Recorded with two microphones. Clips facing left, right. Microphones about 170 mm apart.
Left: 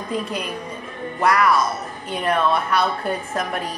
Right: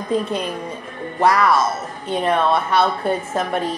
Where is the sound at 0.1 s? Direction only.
30° right (ahead or behind).